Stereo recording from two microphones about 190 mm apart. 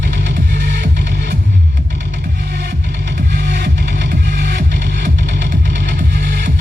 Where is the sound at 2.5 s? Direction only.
60° right (ahead or behind).